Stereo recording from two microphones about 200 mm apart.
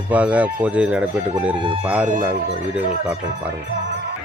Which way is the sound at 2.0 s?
40° right (ahead or behind).